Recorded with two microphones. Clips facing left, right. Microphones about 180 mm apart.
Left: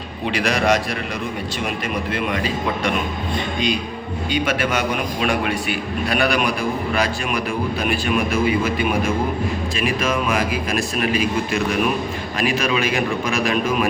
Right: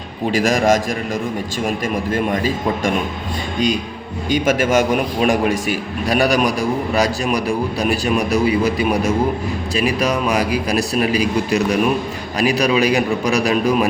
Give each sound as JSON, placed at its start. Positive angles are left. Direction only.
{"t": 0.3, "sound": "a man's voice", "side_deg": -45}
{"t": 4.3, "sound": "a man's voice", "side_deg": -45}